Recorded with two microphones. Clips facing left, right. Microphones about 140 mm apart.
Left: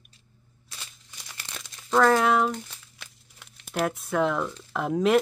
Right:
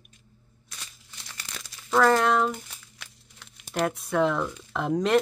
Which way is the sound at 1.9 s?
Centre (ahead or behind).